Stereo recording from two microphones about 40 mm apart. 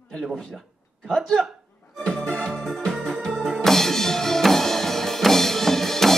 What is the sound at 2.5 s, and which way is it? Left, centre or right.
Music, centre.